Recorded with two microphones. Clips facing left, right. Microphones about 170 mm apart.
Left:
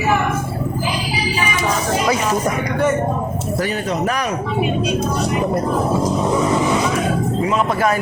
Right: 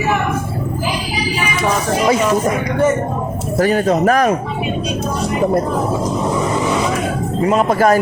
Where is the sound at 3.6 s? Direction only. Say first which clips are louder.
Right 8 dB; 45° right (ahead or behind).